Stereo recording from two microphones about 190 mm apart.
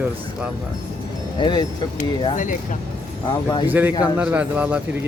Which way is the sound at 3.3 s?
20° left (ahead or behind).